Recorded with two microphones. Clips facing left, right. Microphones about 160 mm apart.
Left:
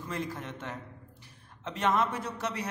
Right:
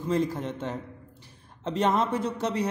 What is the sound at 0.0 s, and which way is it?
A man's voice, 30° right (ahead or behind).